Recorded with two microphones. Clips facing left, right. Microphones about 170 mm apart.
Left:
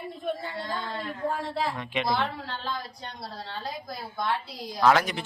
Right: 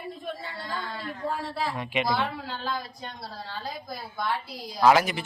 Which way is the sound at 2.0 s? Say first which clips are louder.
Left 1 dB; 5° right (ahead or behind).